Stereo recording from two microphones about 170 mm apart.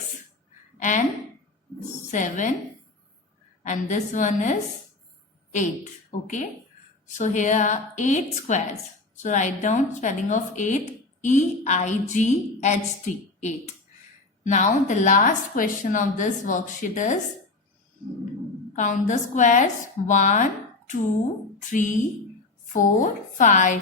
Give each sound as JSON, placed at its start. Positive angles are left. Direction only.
{"t": 0.8, "sound": "a woman's voice", "side_deg": 45}
{"t": 2.0, "sound": "a woman's voice", "side_deg": 45}
{"t": 3.6, "sound": "a woman's voice", "side_deg": 45}
{"t": 14.4, "sound": "a woman's voice", "side_deg": 45}
{"t": 18.8, "sound": "a woman's voice", "side_deg": 50}